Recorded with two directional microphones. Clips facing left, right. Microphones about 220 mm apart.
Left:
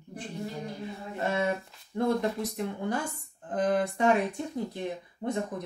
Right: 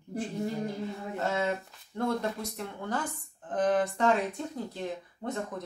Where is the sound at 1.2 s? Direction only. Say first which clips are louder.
Left 2 dB; 15° left (ahead or behind).